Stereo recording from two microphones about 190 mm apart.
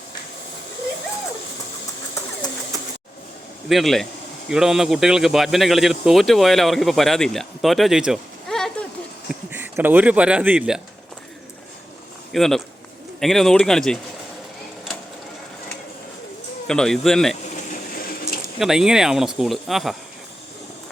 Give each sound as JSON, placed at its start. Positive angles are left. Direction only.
{"t": 3.7, "sound": "a man's voice", "side_deg": 0}
{"t": 9.3, "sound": "speech", "side_deg": -10}
{"t": 12.3, "sound": "a man's voice", "side_deg": 0}
{"t": 16.6, "sound": "a man's voice", "side_deg": 5}
{"t": 17.5, "sound": "a sound", "side_deg": 45}
{"t": 18.6, "sound": "a man's voice", "side_deg": -5}